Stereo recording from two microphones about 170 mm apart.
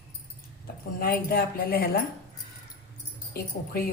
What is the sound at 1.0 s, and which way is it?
Speech, 65° left (ahead or behind).